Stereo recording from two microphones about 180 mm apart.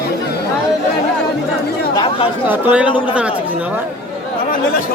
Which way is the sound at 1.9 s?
30° left (ahead or behind).